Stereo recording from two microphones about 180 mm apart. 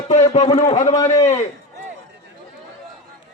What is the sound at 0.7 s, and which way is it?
Speech, 20° left (ahead or behind).